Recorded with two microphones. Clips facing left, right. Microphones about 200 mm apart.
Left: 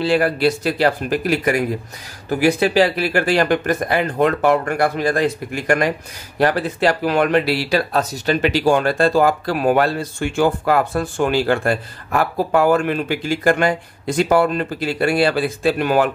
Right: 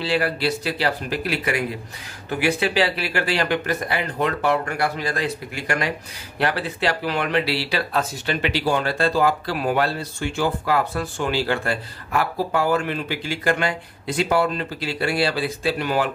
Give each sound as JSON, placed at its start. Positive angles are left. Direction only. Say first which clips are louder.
{"t": 0.0, "sound": "speech", "louder": "left 6 dB", "side_deg": 50}